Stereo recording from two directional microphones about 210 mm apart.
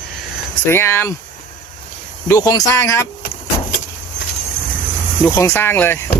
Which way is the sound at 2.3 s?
15° left (ahead or behind).